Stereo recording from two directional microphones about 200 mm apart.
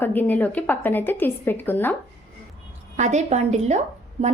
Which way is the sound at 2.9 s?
35° right (ahead or behind).